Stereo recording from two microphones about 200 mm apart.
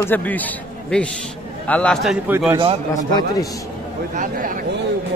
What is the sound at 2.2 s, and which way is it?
Speech, 10° right (ahead or behind).